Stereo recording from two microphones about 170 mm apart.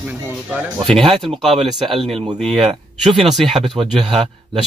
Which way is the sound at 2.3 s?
5° left (ahead or behind).